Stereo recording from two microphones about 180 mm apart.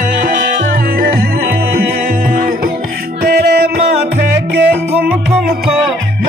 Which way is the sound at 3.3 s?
60° right (ahead or behind).